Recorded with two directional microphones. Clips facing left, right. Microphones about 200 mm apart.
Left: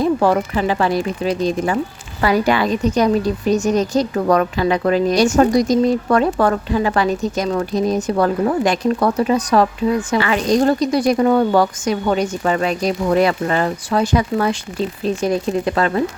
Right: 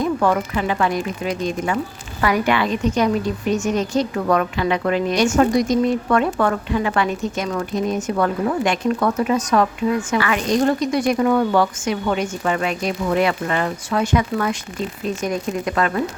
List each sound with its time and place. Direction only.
0.0 s a woman's voice: 35° left (ahead or behind)